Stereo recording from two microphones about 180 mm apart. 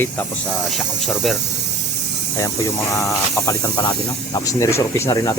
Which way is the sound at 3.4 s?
15° left (ahead or behind).